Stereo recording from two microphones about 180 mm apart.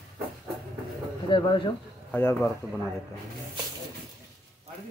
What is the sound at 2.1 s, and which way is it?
Speech, 10° left (ahead or behind).